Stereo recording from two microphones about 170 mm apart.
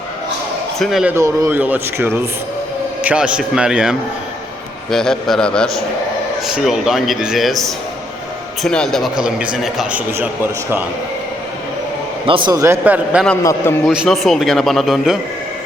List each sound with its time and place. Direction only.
0.8 s speech: centre (ahead or behind)
1.1 s speech: 15° right (ahead or behind); by 7.6 s centre (ahead or behind)
8.6 s speech: 5° left (ahead or behind)
12.2 s a man's voice: 30° right (ahead or behind); by 13.2 s 10° right (ahead or behind)
13.4 s a man's voice: 20° left (ahead or behind)
13.8 s speech: centre (ahead or behind)